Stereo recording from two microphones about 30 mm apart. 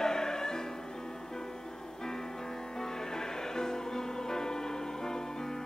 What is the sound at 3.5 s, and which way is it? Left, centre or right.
Music, centre.